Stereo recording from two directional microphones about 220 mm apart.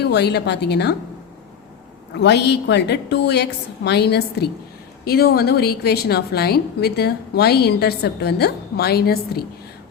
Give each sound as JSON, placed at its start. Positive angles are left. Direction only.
{"t": 0.0, "sound": "a woman's voice", "side_deg": 50}
{"t": 2.1, "sound": "a woman's voice", "side_deg": 50}